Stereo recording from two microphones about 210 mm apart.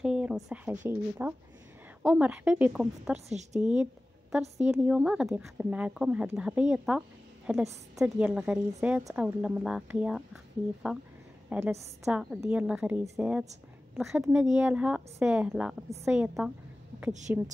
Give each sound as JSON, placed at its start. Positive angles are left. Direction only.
{"t": 0.0, "sound": "a woman's voice", "side_deg": -5}
{"t": 3.3, "sound": "a woman's voice", "side_deg": -35}
{"t": 3.6, "sound": "a woman's voice", "side_deg": -5}